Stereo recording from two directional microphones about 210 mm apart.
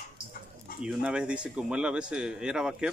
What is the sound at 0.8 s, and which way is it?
Speech, 5° right (ahead or behind).